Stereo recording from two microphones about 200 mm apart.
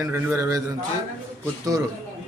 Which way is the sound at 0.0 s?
15° right (ahead or behind).